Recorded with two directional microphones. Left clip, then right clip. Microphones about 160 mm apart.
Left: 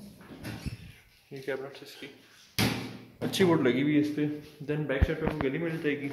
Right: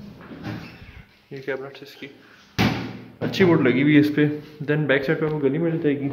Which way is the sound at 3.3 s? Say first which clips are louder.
Right 7 dB; 30° left (ahead or behind).